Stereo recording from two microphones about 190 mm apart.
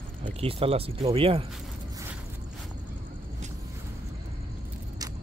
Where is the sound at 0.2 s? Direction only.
30° right (ahead or behind).